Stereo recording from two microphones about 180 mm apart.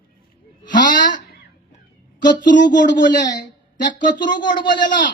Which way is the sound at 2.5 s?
45° left (ahead or behind).